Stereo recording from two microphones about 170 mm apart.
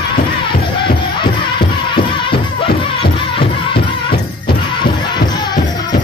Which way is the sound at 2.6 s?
30° left (ahead or behind).